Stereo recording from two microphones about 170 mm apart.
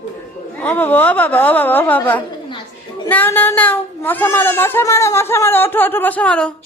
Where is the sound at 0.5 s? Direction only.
10° left (ahead or behind).